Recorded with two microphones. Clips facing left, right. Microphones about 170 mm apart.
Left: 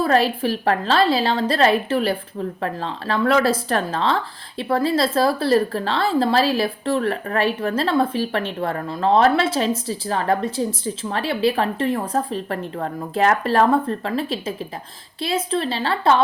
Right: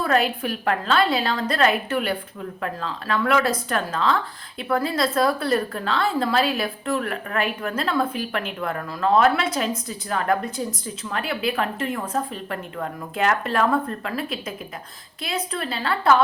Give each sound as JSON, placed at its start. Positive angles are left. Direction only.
{"t": 0.0, "sound": "speech", "side_deg": 30}